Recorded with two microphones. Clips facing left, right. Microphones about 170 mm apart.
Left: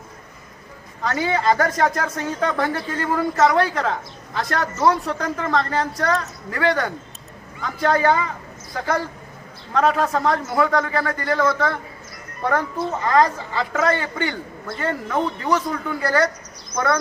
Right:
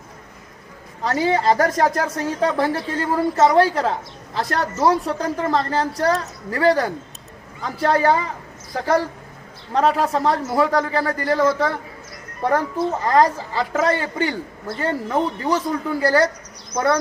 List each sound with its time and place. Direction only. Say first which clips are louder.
1.0 s speech: right 2 dB; 30° right (ahead or behind)
9.7 s speech: right 1 dB; 30° right (ahead or behind)